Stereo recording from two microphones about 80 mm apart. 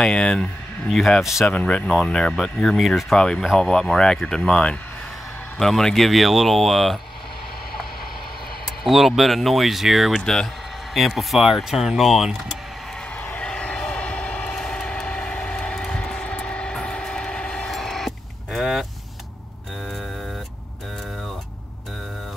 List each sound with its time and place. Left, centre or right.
0.0 s speech: centre
8.8 s speech: centre
13.2 s vehicle: left; by 18.9 s centre